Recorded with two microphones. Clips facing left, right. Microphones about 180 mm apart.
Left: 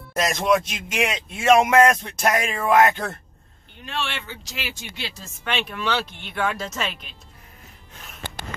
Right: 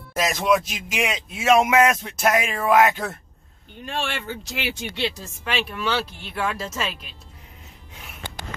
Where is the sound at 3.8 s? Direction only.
45° right (ahead or behind).